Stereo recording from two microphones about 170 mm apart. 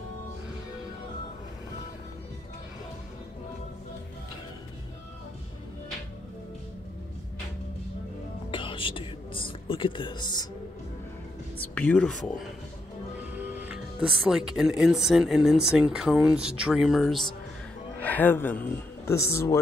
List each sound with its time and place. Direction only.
8.5 s music: 30° left (ahead or behind)
11.7 s speech: 5° left (ahead or behind)
13.4 s music: 10° right (ahead or behind)
14.0 s speech: centre (ahead or behind); by 19.6 s 15° left (ahead or behind)